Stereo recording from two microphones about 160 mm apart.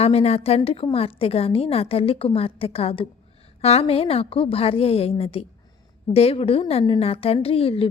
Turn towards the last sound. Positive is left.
turn(degrees=35)  # may be behind; listen again after turning